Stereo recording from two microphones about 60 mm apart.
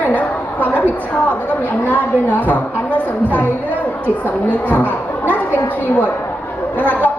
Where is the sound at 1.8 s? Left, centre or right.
Left.